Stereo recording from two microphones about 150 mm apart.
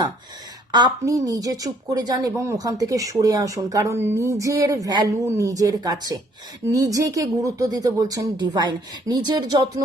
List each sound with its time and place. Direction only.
0.7 s a woman's voice: 25° right (ahead or behind)